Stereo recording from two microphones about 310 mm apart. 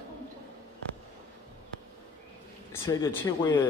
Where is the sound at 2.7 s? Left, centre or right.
Centre.